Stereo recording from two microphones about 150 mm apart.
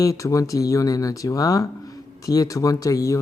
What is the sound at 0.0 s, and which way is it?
Speech, 20° left (ahead or behind).